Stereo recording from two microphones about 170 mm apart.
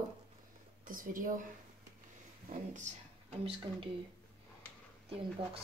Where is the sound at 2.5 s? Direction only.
45° right (ahead or behind).